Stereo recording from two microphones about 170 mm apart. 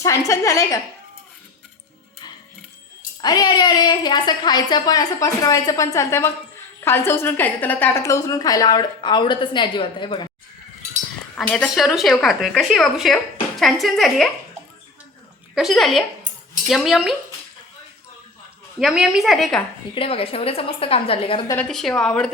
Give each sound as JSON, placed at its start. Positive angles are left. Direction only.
{"t": 0.3, "sound": "a woman's voice", "side_deg": 20}
{"t": 3.2, "sound": "a woman's voice", "side_deg": 25}
{"t": 11.3, "sound": "a woman's voice", "side_deg": 0}
{"t": 15.5, "sound": "a woman's voice", "side_deg": 0}
{"t": 18.8, "sound": "a woman's voice", "side_deg": -5}
{"t": 20.0, "sound": "a woman's voice", "side_deg": 35}
{"t": 21.6, "sound": "a woman's voice", "side_deg": 5}